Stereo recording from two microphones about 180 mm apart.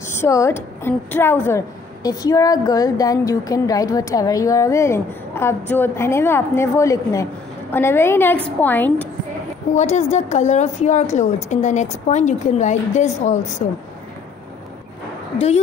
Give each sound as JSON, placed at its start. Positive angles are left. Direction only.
{"t": 0.1, "sound": "a woman's voice", "side_deg": 15}
{"t": 9.8, "sound": "a woman's voice", "side_deg": 40}